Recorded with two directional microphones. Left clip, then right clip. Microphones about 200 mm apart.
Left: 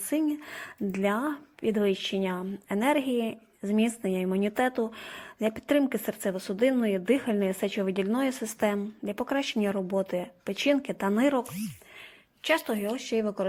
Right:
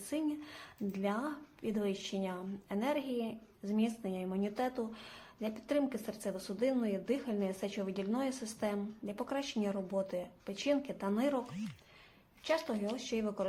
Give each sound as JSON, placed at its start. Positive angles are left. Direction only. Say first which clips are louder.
{"t": 0.1, "sound": "a woman's voice", "louder": "left 9 dB", "side_deg": 35}
{"t": 12.5, "sound": "a woman's voice", "louder": "left 8 dB", "side_deg": 30}